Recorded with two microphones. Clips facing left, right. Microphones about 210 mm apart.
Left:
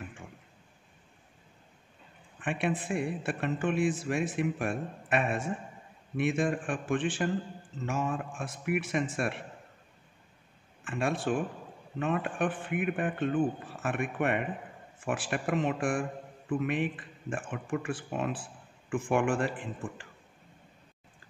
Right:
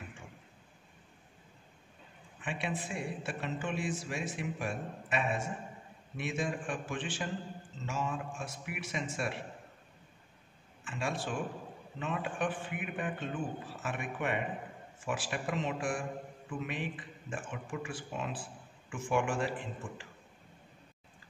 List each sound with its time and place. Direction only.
2.4 s a man's voice: 55° left (ahead or behind)
10.8 s a man's voice: 55° left (ahead or behind)